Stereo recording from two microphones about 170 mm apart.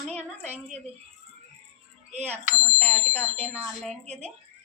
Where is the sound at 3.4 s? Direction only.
10° right (ahead or behind).